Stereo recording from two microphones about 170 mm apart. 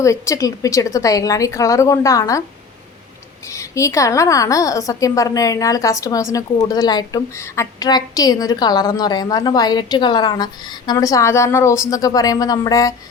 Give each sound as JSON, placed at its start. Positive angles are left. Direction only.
{"t": 0.0, "sound": "a woman's voice", "side_deg": 20}
{"t": 3.4, "sound": "a woman's voice", "side_deg": 15}